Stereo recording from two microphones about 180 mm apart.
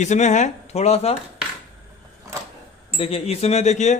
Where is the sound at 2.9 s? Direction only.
30° left (ahead or behind).